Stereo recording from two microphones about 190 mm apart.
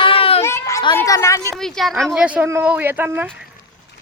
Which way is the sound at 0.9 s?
15° left (ahead or behind).